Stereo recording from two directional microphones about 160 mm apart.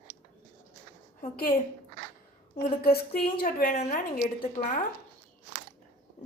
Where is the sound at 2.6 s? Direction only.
70° left (ahead or behind).